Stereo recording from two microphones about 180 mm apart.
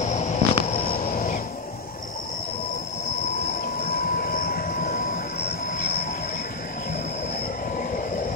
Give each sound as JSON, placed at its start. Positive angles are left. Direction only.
{"t": 0.1, "sound": "a sound", "side_deg": 40}
{"t": 1.0, "sound": "music", "side_deg": 50}
{"t": 3.9, "sound": "train", "side_deg": 55}